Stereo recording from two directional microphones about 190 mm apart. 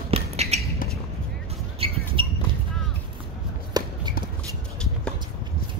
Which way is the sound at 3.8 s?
20° right (ahead or behind).